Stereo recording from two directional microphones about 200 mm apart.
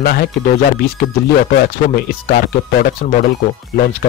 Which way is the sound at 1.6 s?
50° left (ahead or behind).